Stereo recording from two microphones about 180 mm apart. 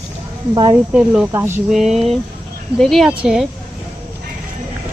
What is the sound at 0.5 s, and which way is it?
Speech, 25° right (ahead or behind).